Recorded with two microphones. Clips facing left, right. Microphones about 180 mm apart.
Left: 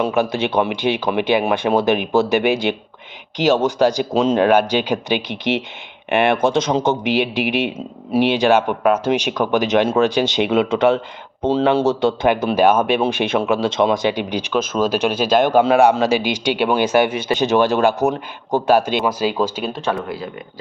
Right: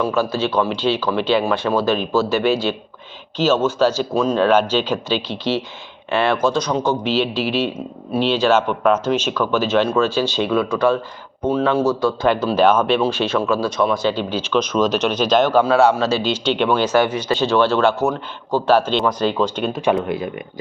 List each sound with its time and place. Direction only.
0.0 s a man's voice: 20° left (ahead or behind)
19.7 s speech: 15° right (ahead or behind)